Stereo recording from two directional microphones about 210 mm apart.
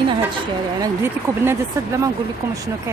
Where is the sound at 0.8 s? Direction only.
15° right (ahead or behind).